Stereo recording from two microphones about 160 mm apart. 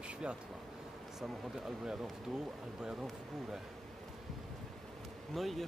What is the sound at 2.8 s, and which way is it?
Speech, 5° right (ahead or behind).